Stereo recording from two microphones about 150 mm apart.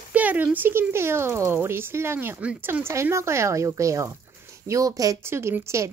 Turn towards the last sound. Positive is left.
turn(degrees=-20)  # may be behind; listen again after turning